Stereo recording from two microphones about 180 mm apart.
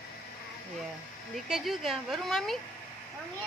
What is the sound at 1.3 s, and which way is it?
Speech, centre (ahead or behind).